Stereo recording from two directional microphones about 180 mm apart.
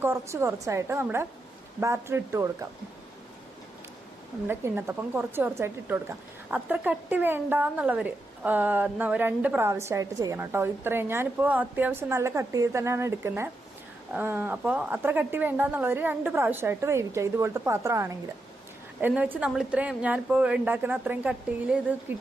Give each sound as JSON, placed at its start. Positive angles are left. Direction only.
{"t": 0.0, "sound": "a woman's voice", "side_deg": -15}
{"t": 4.4, "sound": "a woman's voice", "side_deg": -10}